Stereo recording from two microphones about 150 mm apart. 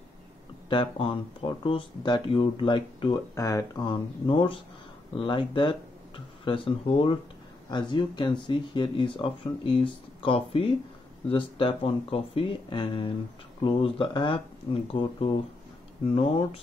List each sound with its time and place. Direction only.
0.7 s speech: 35° left (ahead or behind)
3.3 s speech: 20° left (ahead or behind); by 16.6 s 40° left (ahead or behind)